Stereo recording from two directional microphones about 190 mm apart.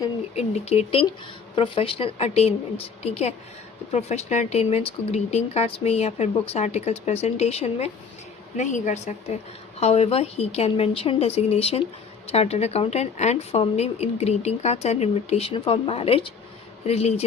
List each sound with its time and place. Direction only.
0.3 s speech: 35° left (ahead or behind)